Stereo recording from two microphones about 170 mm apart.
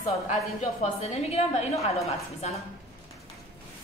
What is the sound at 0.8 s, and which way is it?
Speech, 40° left (ahead or behind).